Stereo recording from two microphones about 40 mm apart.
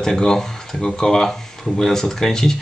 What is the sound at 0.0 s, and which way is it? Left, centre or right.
Speech, centre.